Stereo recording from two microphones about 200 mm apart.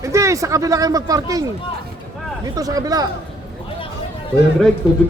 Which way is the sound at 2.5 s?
20° right (ahead or behind).